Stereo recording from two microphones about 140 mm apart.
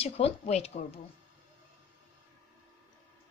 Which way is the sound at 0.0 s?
45° left (ahead or behind).